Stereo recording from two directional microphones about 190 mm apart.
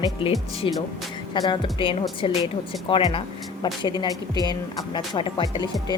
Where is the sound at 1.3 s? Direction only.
25° left (ahead or behind).